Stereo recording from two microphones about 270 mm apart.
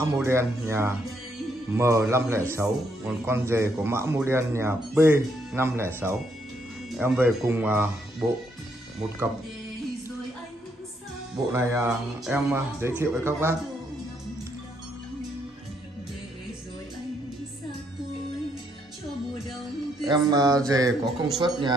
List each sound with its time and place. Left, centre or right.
0.0 s a man's voice: centre
11.5 s a man's voice: centre
20.1 s a man's voice: centre